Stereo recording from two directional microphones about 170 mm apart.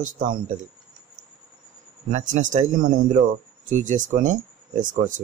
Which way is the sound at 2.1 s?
50° right (ahead or behind).